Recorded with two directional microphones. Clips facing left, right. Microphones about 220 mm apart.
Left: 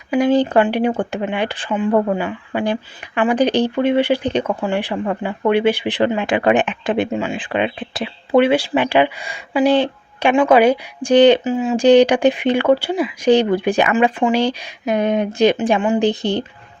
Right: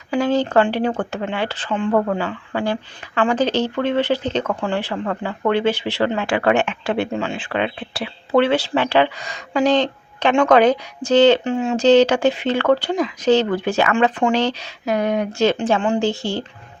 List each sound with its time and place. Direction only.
0.1 s speech: 10° left (ahead or behind)
11.4 s speech: 5° left (ahead or behind)
11.9 s speech: 15° left (ahead or behind)